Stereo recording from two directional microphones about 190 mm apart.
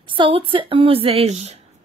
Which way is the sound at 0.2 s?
25° right (ahead or behind).